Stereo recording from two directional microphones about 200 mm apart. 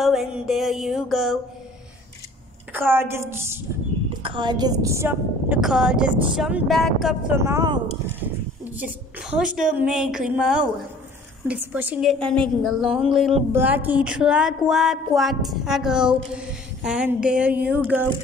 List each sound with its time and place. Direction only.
0.0 s speech: centre (ahead or behind)
2.7 s a woman's voice: 10° right (ahead or behind)
4.2 s a woman's voice: 25° right (ahead or behind); by 7.3 s centre (ahead or behind)
7.3 s a woman's voice: 15° right (ahead or behind)